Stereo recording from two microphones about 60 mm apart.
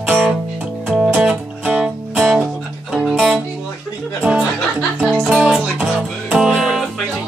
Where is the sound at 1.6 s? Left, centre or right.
Right.